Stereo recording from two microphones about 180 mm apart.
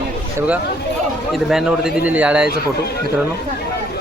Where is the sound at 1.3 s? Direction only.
Centre (ahead or behind).